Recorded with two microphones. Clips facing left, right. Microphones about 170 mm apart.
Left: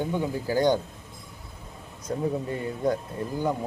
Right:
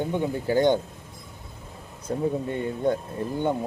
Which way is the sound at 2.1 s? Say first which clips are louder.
Right 2 dB; 30° right (ahead or behind).